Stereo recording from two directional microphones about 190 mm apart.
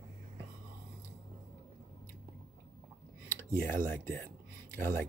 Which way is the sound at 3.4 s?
10° left (ahead or behind).